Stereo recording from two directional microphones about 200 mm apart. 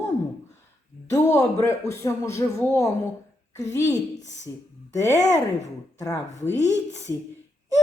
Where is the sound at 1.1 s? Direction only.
15° left (ahead or behind).